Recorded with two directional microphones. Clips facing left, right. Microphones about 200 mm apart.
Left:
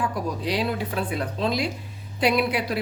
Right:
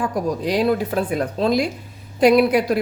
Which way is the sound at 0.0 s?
45° right (ahead or behind).